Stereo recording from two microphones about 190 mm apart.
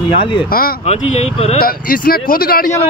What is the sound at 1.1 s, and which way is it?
Speech, 35° left (ahead or behind).